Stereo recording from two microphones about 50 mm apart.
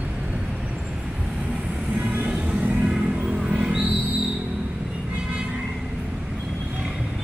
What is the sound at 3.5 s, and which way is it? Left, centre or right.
Music, right.